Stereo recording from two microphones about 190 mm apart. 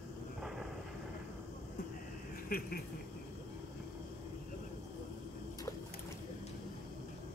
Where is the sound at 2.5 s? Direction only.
55° left (ahead or behind).